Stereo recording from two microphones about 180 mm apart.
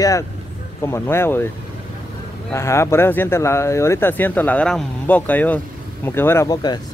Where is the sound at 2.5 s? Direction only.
15° left (ahead or behind).